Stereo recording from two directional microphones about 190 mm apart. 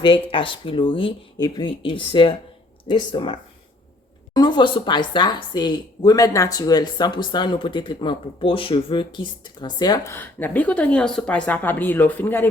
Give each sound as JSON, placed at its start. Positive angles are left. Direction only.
{"t": 0.0, "sound": "speech", "side_deg": 25}